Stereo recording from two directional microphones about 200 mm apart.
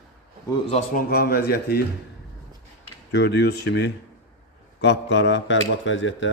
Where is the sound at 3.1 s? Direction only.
60° left (ahead or behind).